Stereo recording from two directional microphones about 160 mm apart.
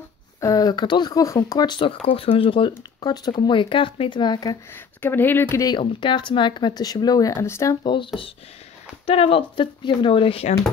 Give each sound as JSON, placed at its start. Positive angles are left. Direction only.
{"t": 0.4, "sound": "speech", "side_deg": 20}
{"t": 5.0, "sound": "speech", "side_deg": 10}
{"t": 7.8, "sound": "speech", "side_deg": 30}